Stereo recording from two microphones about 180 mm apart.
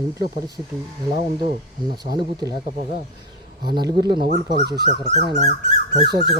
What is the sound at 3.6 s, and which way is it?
Speech, 25° right (ahead or behind).